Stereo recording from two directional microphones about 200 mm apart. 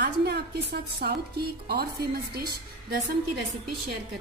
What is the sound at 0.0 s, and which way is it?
Speech, 55° right (ahead or behind).